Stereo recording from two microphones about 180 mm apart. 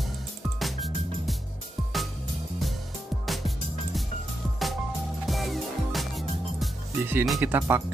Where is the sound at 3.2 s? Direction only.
Centre (ahead or behind).